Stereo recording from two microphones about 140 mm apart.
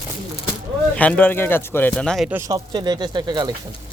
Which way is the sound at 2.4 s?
30° right (ahead or behind).